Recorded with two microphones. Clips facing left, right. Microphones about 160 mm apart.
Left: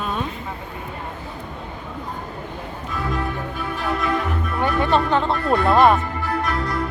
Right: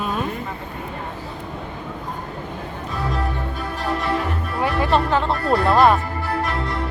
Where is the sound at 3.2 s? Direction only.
35° right (ahead or behind).